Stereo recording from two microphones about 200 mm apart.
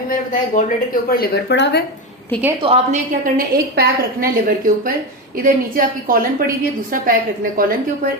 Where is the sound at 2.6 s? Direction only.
25° right (ahead or behind).